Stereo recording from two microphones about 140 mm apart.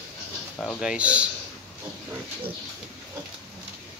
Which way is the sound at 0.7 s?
5° right (ahead or behind).